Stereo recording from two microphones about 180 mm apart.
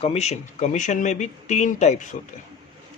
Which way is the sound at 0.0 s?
35° left (ahead or behind).